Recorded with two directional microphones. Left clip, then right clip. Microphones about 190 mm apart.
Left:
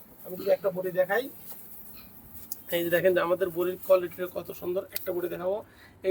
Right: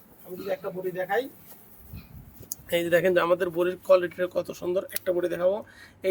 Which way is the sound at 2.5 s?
50° right (ahead or behind).